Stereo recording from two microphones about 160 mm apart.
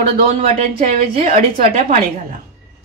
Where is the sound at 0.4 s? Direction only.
35° right (ahead or behind).